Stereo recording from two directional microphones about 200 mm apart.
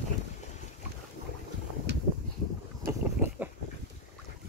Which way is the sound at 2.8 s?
45° right (ahead or behind).